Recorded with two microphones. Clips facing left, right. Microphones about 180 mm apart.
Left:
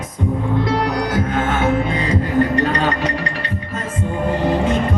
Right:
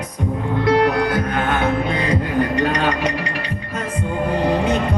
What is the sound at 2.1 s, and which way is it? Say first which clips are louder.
Music: left 4 dB; 15° right (ahead or behind).